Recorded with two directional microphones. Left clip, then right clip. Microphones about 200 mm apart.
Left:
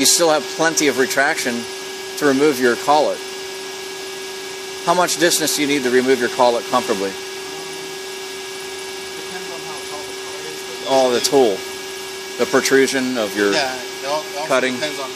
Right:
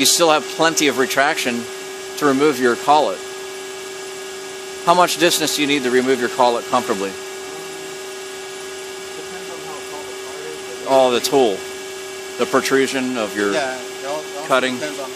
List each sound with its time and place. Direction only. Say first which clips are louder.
0.0 s speech: right 1 dB; 15° right (ahead or behind)
4.8 s speech: right 2 dB; 15° right (ahead or behind)
10.9 s speech: right 1 dB; 15° right (ahead or behind)